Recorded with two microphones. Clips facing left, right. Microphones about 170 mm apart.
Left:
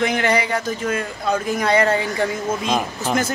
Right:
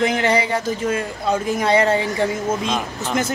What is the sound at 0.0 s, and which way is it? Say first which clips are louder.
Speech: right 1 dB; 25° right (ahead or behind).